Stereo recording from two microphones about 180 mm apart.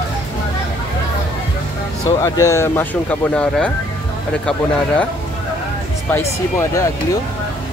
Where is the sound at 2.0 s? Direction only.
20° left (ahead or behind).